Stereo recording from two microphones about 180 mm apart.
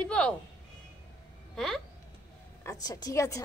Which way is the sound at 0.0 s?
5° left (ahead or behind).